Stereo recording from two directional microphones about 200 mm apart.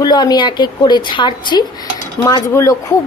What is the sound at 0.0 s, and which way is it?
A woman's voice, 20° left (ahead or behind).